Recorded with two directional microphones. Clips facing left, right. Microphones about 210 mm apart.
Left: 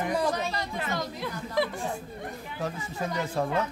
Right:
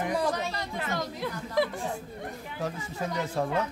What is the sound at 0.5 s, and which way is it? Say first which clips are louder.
Speech: left 1 dB; 50° right (ahead or behind).